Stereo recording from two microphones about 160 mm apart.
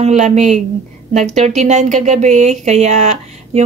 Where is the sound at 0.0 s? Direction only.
45° right (ahead or behind).